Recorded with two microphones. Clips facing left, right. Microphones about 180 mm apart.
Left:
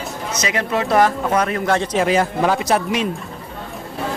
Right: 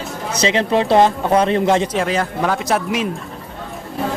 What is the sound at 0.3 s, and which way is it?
Speech, 30° right (ahead or behind).